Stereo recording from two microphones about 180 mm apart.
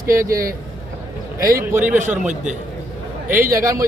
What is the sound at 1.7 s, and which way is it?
Speech, 10° right (ahead or behind).